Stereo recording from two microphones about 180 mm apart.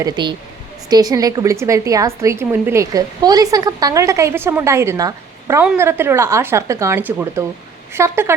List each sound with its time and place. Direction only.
0.0 s a woman's voice: 25° right (ahead or behind)